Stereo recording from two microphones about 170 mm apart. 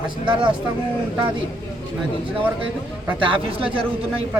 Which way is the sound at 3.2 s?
30° right (ahead or behind).